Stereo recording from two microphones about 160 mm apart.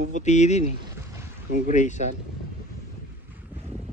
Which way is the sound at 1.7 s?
50° left (ahead or behind).